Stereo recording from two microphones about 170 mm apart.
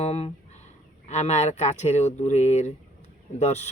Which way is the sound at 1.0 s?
40° left (ahead or behind).